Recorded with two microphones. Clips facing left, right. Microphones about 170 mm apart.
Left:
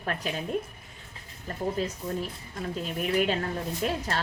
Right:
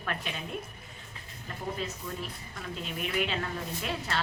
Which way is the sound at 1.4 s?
40° left (ahead or behind).